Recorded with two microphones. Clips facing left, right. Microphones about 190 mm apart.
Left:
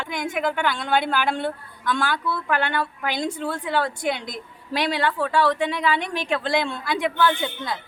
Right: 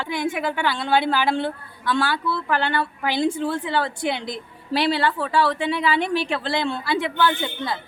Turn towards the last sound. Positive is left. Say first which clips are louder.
# even
turn(degrees=-5)  # may be behind; listen again after turning